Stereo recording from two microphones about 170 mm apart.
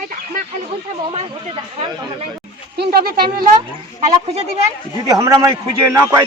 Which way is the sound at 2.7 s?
60° right (ahead or behind).